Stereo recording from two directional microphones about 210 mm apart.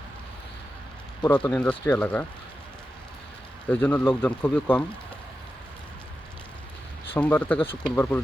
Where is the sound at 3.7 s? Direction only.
5° left (ahead or behind).